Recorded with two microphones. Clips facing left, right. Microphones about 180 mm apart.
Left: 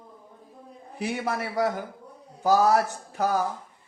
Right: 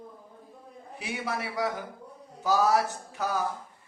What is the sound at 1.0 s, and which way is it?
A man's voice, 50° left (ahead or behind).